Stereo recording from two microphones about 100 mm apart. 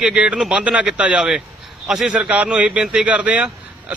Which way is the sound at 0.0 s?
10° right (ahead or behind).